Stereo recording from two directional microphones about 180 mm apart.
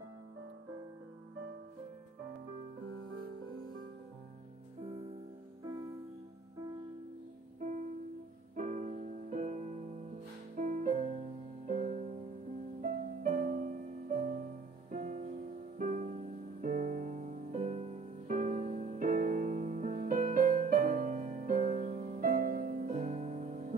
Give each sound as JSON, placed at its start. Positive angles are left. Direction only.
{"t": 5.6, "sound": "music", "side_deg": -25}
{"t": 8.5, "sound": "music", "side_deg": -45}